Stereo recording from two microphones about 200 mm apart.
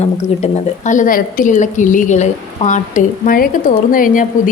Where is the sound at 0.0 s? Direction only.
35° left (ahead or behind).